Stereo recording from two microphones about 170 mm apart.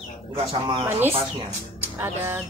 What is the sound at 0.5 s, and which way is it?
Speech, 30° right (ahead or behind).